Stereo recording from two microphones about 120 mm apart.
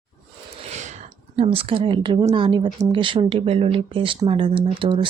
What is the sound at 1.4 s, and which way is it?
Speech, 50° right (ahead or behind).